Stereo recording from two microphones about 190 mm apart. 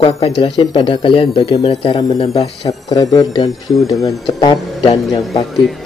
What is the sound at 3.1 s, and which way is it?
Speech, 20° left (ahead or behind).